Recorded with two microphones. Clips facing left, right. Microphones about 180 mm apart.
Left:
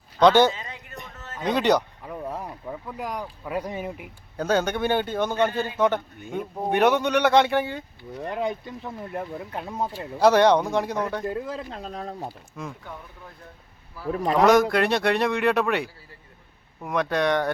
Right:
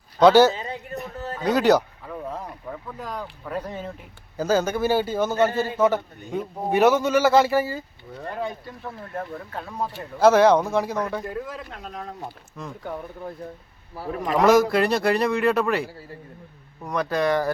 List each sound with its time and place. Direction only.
0.2 s speech: 5° right (ahead or behind)
0.5 s a sound: 35° right (ahead or behind)
1.5 s a man's voice: 5° right (ahead or behind)
2.0 s speech: 10° left (ahead or behind)
4.4 s a man's voice: centre (ahead or behind)
8.2 s speech: 15° left (ahead or behind)
10.2 s a man's voice: centre (ahead or behind)
11.3 s speech: 25° left (ahead or behind)
12.6 s a man's voice: 5° left (ahead or behind)
14.3 s a man's voice: centre (ahead or behind)